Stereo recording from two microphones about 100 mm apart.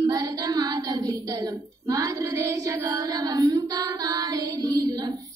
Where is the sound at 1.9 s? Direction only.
35° right (ahead or behind).